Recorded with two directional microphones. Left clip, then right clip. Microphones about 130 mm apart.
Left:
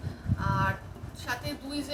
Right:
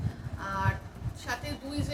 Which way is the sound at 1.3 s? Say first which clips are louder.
Left 1 dB; 25° left (ahead or behind).